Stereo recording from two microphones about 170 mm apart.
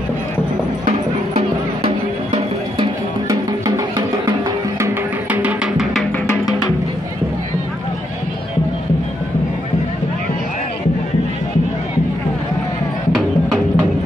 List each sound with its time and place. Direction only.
0.8 s music: 40° right (ahead or behind)
3.3 s music: 20° right (ahead or behind); by 6.0 s 5° right (ahead or behind)
13.1 s music: centre (ahead or behind)